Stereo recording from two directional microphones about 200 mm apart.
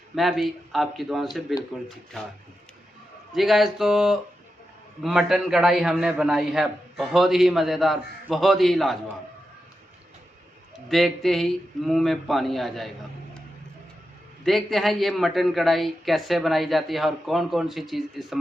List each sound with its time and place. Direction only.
0.2 s a man's voice: centre (ahead or behind)
3.3 s a man's voice: centre (ahead or behind)
10.8 s a man's voice: centre (ahead or behind)
14.4 s a man's voice: centre (ahead or behind)